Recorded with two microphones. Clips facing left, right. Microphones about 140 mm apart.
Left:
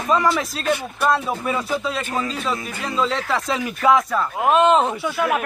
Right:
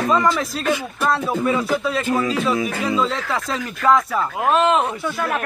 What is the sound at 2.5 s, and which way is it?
Speech, centre (ahead or behind).